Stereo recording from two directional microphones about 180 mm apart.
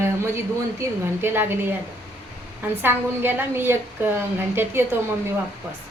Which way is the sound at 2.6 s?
10° right (ahead or behind).